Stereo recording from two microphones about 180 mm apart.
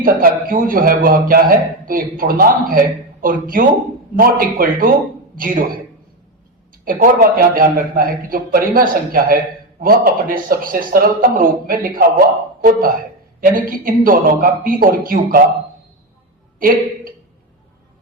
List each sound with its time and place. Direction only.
0.0 s a man's voice: 50° right (ahead or behind)
6.8 s a man's voice: 50° right (ahead or behind)
16.6 s a woman's voice: 50° right (ahead or behind)